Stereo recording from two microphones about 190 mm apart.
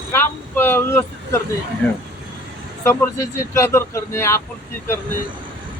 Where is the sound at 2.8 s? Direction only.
15° left (ahead or behind).